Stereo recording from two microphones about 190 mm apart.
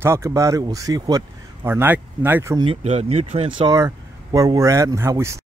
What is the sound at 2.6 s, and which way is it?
Speech, 35° right (ahead or behind).